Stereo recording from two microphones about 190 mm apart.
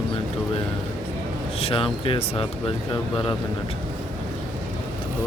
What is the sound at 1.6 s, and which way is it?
Speech, 30° left (ahead or behind).